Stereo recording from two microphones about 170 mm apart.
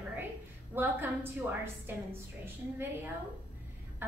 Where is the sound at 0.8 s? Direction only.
15° right (ahead or behind).